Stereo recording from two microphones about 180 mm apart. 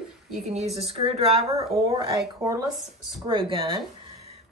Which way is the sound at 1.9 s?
20° right (ahead or behind).